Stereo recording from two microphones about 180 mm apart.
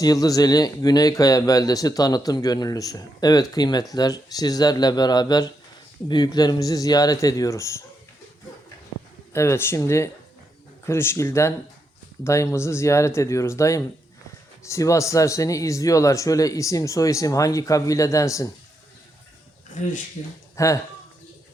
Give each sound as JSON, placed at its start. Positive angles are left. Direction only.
{"t": 0.0, "sound": "speech", "side_deg": 20}
{"t": 9.3, "sound": "speech", "side_deg": 15}
{"t": 20.6, "sound": "speech", "side_deg": 15}